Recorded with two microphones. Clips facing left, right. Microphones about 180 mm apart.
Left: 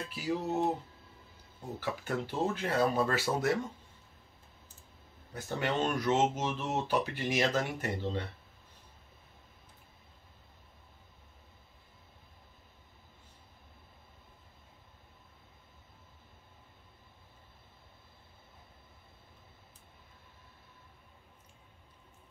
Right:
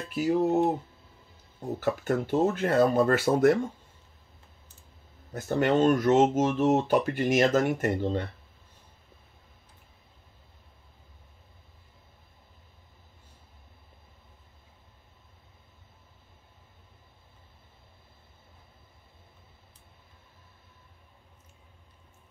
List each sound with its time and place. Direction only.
0.1 s speech: 50° right (ahead or behind)
1.8 s speech: 50° right (ahead or behind)
5.3 s speech: 45° right (ahead or behind)